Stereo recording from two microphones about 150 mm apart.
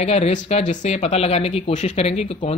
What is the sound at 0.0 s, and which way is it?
Speech, 45° left (ahead or behind).